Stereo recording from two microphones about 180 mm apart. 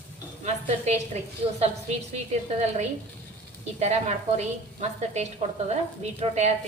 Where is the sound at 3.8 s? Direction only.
40° right (ahead or behind).